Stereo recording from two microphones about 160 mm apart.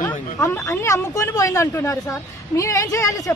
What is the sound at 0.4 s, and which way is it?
Speech, 15° left (ahead or behind).